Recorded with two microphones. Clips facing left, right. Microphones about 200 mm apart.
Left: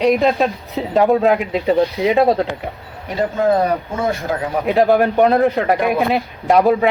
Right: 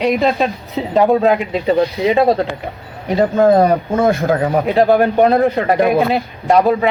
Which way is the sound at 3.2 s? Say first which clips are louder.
Right 5 dB; 50° right (ahead or behind).